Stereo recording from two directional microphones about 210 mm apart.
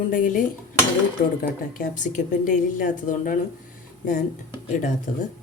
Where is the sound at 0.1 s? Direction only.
40° left (ahead or behind).